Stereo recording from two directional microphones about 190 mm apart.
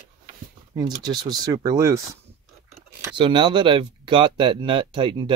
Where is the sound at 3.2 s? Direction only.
25° right (ahead or behind).